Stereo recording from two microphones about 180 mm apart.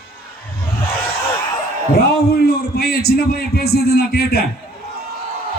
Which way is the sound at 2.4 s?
60° left (ahead or behind).